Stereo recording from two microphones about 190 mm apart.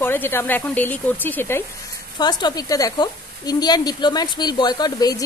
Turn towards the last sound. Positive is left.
turn(degrees=20)  # may be behind; listen again after turning